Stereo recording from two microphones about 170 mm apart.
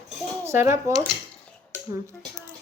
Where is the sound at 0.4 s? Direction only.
15° right (ahead or behind).